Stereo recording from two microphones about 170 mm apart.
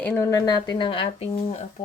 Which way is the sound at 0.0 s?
15° left (ahead or behind).